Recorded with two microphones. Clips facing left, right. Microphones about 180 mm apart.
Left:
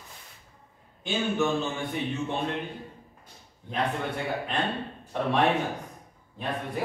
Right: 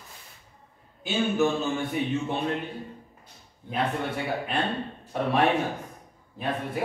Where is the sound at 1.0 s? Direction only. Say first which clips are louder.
Right 2 dB; 5° right (ahead or behind).